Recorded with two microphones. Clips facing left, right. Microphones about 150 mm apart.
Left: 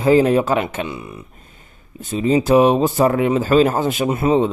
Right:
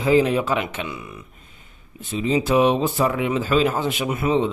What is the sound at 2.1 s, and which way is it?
Speech, 45° left (ahead or behind).